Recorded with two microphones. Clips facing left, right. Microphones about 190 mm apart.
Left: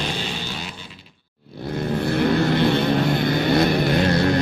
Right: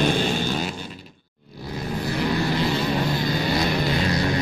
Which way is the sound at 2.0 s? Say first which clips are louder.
Left 5 dB; 60° left (ahead or behind).